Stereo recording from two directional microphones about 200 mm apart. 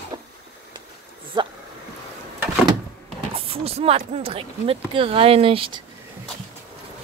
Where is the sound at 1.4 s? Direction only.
20° right (ahead or behind).